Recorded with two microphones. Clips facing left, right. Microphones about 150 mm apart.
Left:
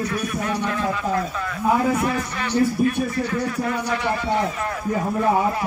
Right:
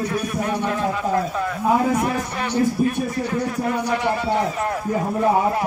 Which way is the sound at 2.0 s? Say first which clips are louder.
Right 1 dB; 40° right (ahead or behind).